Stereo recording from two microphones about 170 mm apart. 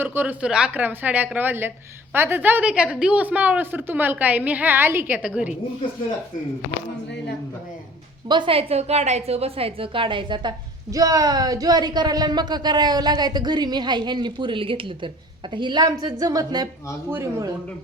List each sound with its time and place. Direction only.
0.0 s a woman's voice: 10° right (ahead or behind)
8.3 s a woman's voice: 30° right (ahead or behind); by 17.5 s 15° right (ahead or behind)